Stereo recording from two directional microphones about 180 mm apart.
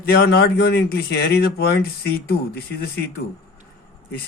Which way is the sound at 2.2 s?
60° left (ahead or behind).